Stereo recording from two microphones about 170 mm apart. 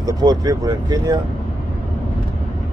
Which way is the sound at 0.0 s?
20° right (ahead or behind).